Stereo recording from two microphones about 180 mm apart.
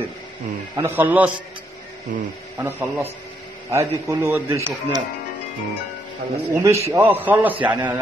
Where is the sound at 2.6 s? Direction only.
10° right (ahead or behind).